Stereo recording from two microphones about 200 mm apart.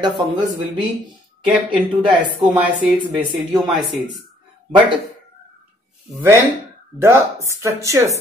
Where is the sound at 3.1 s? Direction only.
20° right (ahead or behind).